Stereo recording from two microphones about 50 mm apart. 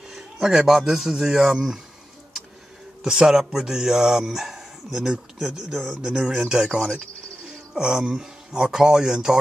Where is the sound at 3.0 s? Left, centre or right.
Centre.